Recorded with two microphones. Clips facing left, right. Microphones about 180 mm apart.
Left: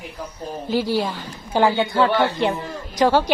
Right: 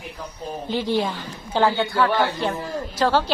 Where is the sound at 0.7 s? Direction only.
5° left (ahead or behind).